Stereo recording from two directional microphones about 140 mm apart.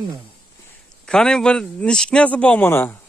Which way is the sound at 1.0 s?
5° left (ahead or behind).